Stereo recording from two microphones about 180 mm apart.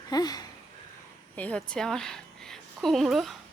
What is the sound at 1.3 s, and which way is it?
A woman's voice, 5° left (ahead or behind).